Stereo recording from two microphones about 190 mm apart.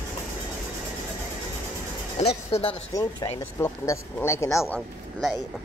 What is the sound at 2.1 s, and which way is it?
Speech, 30° left (ahead or behind).